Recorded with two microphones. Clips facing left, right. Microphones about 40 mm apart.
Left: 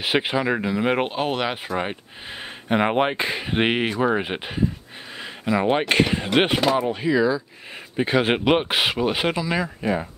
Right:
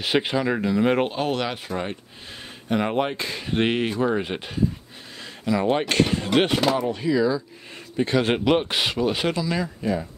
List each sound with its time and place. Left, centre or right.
0.0 s speech: centre
2.7 s speech: left